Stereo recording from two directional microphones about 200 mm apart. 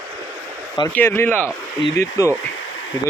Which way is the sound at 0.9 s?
10° left (ahead or behind).